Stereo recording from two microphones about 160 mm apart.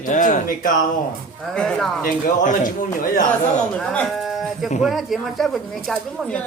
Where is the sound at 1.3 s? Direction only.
5° left (ahead or behind).